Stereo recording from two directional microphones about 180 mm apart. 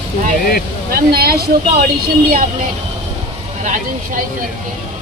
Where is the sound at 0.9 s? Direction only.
60° right (ahead or behind).